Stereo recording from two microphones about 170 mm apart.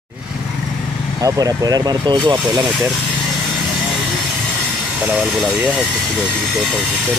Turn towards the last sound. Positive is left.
turn(degrees=0)  # may be behind; listen again after turning